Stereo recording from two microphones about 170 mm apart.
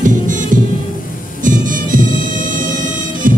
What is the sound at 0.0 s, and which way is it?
Music, 50° right (ahead or behind).